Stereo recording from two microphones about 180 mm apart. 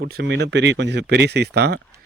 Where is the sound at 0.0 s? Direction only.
65° right (ahead or behind).